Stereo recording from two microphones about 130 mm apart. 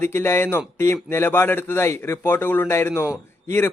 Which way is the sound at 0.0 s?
20° left (ahead or behind).